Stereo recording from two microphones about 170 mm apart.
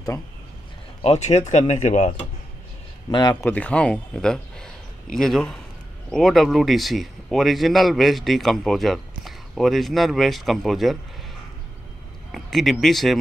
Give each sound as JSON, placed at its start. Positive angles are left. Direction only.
{"t": 1.0, "sound": "speech", "side_deg": 40}
{"t": 3.1, "sound": "speech", "side_deg": 25}
{"t": 3.4, "sound": "a man's voice", "side_deg": 10}
{"t": 12.3, "sound": "speech", "side_deg": 0}